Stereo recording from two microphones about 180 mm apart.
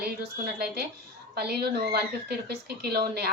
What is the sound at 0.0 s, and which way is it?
Speech, 60° right (ahead or behind).